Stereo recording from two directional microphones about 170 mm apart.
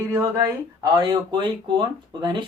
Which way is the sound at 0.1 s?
15° right (ahead or behind).